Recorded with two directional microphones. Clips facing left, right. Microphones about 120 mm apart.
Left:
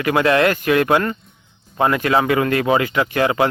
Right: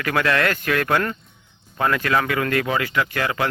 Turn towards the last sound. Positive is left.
turn(degrees=25)  # may be behind; listen again after turning